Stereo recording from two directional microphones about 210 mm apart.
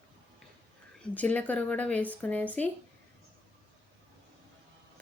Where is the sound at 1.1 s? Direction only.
5° left (ahead or behind).